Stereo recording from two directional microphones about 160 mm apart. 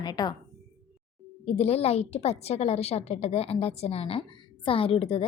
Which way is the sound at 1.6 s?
40° left (ahead or behind).